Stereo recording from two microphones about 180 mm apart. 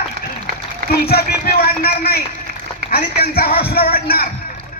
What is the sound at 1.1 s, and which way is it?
Speech, 60° left (ahead or behind).